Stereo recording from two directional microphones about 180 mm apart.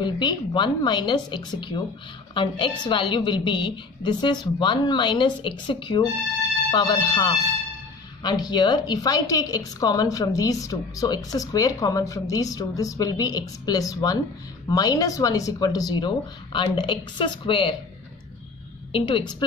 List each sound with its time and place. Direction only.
0.0 s a woman's voice: 25° left (ahead or behind)
18.9 s a woman's voice: 25° left (ahead or behind)